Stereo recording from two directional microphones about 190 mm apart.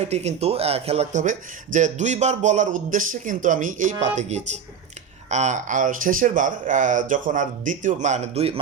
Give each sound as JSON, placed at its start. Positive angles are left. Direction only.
{"t": 0.0, "sound": "speech", "side_deg": -35}